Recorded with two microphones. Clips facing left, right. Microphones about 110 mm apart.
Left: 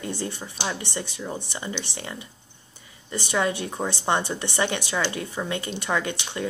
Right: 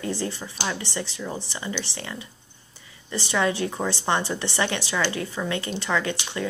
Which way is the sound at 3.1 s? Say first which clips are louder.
Right 1 dB; 15° left (ahead or behind).